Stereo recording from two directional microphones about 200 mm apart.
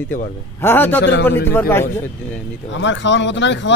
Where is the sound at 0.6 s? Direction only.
10° left (ahead or behind).